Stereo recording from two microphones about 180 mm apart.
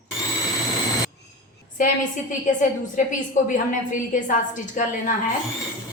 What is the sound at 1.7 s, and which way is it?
A woman's voice, 45° left (ahead or behind).